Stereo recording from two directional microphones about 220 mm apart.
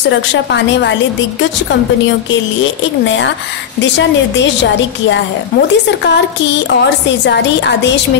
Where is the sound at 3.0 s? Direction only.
55° left (ahead or behind).